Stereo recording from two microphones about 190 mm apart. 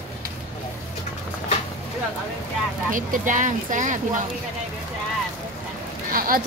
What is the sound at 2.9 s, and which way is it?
Speech, 45° right (ahead or behind).